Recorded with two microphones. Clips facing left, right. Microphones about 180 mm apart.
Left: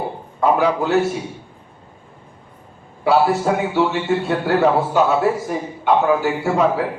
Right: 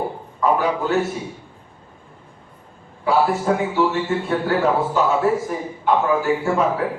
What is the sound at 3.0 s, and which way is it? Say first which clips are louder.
A man's voice: left 3 dB; 75° left (ahead or behind).